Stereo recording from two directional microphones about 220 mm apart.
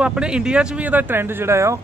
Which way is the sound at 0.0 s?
5° right (ahead or behind).